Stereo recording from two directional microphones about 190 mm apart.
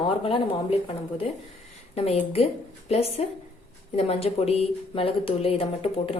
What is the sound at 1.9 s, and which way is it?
A woman's voice, 30° left (ahead or behind).